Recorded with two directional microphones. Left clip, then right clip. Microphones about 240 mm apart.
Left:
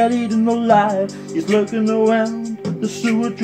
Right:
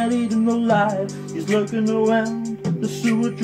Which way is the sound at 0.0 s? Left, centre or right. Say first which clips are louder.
Left 5 dB; left.